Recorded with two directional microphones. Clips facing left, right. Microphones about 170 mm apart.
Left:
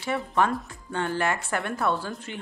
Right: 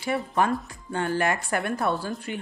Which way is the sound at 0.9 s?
45° right (ahead or behind).